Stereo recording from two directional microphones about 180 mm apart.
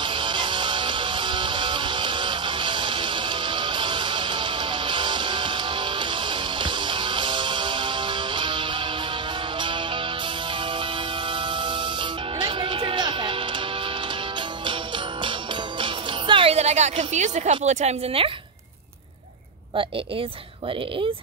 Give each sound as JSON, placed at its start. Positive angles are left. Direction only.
{"t": 0.0, "sound": "music", "side_deg": -25}
{"t": 6.6, "sound": "music", "side_deg": -25}
{"t": 12.4, "sound": "music", "side_deg": -30}
{"t": 15.8, "sound": "music", "side_deg": -30}